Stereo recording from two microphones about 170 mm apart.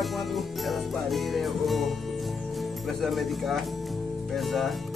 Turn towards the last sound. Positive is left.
turn(degrees=0)  # may be behind; listen again after turning